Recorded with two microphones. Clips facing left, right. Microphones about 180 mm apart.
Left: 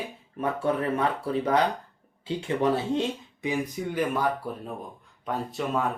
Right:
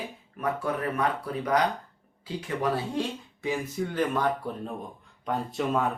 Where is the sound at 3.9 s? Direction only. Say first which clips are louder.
Left 1 dB; 10° left (ahead or behind).